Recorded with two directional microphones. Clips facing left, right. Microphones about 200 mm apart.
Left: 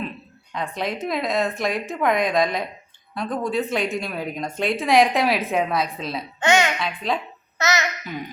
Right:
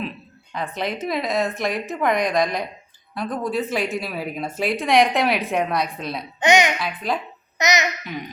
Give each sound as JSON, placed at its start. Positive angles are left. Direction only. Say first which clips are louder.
{"t": 0.5, "sound": "a woman's voice", "louder": "even", "side_deg": 0}
{"t": 6.4, "sound": "a child's voice", "louder": "right 2 dB", "side_deg": -15}
{"t": 6.7, "sound": "a woman's voice", "louder": "even", "side_deg": -5}
{"t": 7.6, "sound": "a child's voice", "louder": "right 2 dB", "side_deg": -15}